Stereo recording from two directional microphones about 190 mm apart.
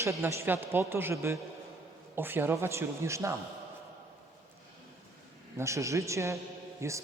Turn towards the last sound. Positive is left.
turn(degrees=-15)  # may be behind; listen again after turning